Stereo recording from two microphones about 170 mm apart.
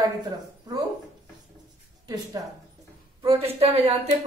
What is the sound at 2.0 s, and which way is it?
Speech, 20° right (ahead or behind).